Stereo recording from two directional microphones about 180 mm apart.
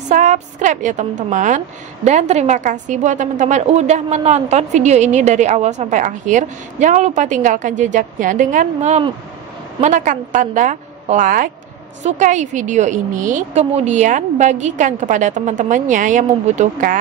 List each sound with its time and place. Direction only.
0.1 s a woman's voice: 40° right (ahead or behind)